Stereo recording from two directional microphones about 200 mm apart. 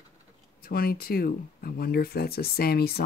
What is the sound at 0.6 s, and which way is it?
Speech, 50° left (ahead or behind).